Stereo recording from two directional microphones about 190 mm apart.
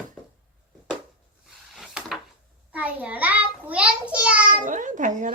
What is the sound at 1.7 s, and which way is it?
Wood, 5° right (ahead or behind).